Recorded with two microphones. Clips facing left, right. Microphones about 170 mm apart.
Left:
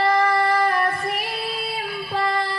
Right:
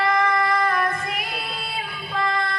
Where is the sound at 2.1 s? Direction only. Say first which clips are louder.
Left 1 dB; 35° left (ahead or behind).